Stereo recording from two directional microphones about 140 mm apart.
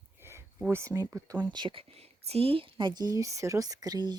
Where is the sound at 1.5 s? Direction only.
35° right (ahead or behind).